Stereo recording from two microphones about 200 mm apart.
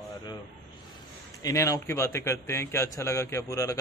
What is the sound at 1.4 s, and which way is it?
A man's voice, 15° left (ahead or behind).